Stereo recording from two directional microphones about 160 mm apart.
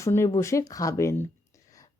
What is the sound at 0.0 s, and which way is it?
A woman's voice, 15° left (ahead or behind).